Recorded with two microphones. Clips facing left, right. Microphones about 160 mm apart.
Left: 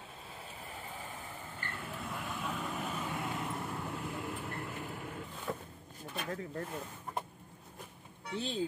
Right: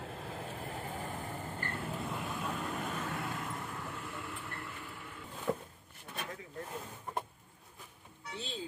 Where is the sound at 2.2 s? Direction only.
Centre (ahead or behind); by 5.2 s 40° left (ahead or behind).